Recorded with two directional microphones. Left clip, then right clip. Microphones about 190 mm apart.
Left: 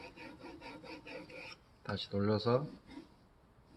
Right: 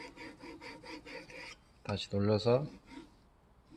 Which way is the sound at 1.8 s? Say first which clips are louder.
Right 2 dB; 35° right (ahead or behind).